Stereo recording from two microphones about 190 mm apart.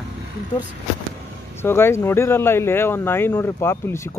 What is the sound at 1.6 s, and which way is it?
Speech, 10° left (ahead or behind).